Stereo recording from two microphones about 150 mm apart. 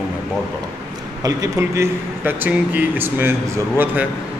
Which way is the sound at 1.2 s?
20° right (ahead or behind).